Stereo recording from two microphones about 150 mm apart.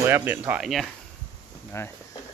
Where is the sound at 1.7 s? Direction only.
15° left (ahead or behind).